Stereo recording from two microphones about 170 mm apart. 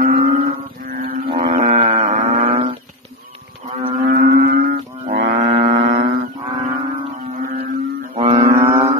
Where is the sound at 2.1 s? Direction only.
50° right (ahead or behind).